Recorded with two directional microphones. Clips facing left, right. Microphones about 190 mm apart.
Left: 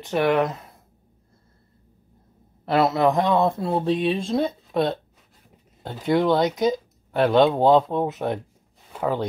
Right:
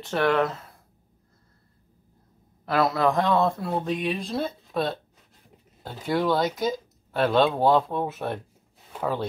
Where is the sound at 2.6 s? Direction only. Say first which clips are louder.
Left 3 dB; 25° left (ahead or behind).